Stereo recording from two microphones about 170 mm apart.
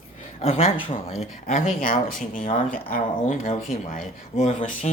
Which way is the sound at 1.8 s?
55° left (ahead or behind).